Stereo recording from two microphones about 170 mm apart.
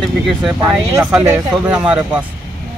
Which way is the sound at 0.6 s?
15° right (ahead or behind).